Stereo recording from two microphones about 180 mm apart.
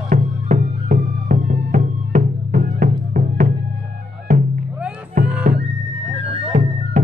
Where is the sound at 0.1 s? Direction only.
45° right (ahead or behind).